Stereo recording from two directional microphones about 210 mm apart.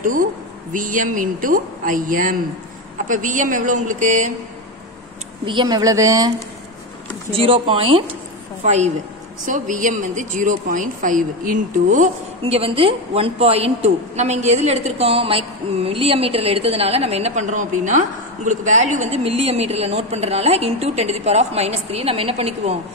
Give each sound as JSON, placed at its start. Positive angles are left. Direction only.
{"t": 0.0, "sound": "speech", "side_deg": -40}
{"t": 5.4, "sound": "a woman's voice", "side_deg": -20}
{"t": 7.3, "sound": "a woman's voice", "side_deg": -25}